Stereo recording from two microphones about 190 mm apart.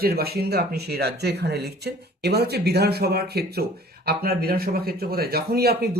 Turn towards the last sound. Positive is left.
turn(degrees=-55)  # may be behind; listen again after turning